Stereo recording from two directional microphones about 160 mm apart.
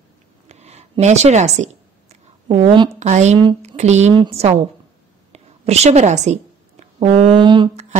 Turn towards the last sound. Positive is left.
turn(degrees=-30)  # may be behind; listen again after turning